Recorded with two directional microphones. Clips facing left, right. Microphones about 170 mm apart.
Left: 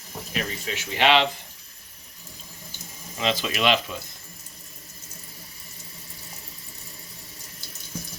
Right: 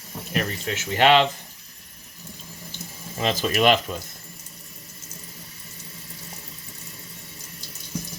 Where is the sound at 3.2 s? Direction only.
45° right (ahead or behind).